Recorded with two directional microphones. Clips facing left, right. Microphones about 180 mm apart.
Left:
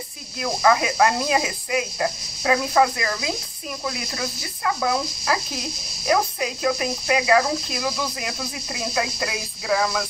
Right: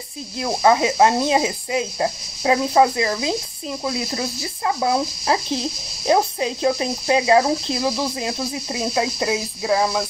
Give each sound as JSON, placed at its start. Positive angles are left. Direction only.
{"t": 0.4, "sound": "speech", "side_deg": -25}